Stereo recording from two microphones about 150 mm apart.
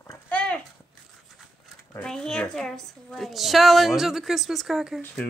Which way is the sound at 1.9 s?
5° left (ahead or behind).